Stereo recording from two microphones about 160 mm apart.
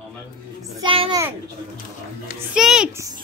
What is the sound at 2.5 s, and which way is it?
Speech, 5° right (ahead or behind).